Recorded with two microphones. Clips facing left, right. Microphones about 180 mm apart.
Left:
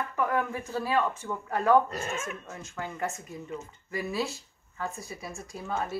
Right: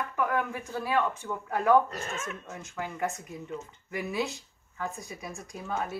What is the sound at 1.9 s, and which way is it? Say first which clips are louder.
Speech: left 2 dB; 10° left (ahead or behind).